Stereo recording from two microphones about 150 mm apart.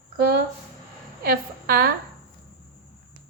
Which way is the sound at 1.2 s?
85° right.